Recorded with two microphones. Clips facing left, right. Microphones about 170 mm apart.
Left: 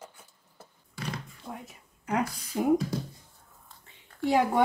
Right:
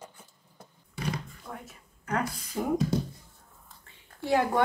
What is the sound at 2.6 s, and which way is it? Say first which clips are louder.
Speech: left 4 dB; 15° left (ahead or behind).